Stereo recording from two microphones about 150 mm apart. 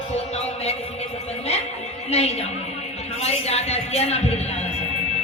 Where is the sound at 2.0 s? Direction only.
45° left (ahead or behind).